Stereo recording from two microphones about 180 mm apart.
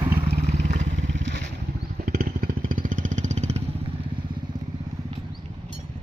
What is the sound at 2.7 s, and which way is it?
Vehicle, 45° right (ahead or behind).